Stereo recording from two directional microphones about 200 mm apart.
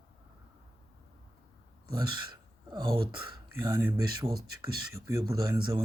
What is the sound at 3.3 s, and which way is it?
Speech, 20° right (ahead or behind).